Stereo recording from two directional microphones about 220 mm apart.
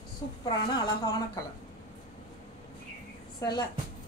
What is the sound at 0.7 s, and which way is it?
Speech, 20° left (ahead or behind).